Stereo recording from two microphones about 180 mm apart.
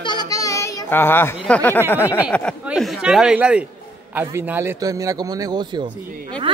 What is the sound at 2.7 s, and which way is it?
A man's voice, 5° right (ahead or behind).